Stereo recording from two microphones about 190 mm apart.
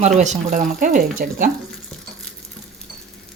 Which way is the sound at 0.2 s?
40° right (ahead or behind).